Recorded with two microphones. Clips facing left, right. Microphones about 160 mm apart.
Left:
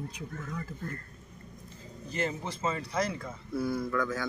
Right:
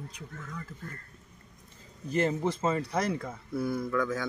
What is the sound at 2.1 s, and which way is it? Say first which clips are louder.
Speech: right 6 dB; 50° right (ahead or behind).